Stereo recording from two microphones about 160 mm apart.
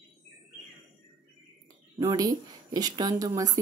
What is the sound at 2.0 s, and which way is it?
Speech, 25° right (ahead or behind).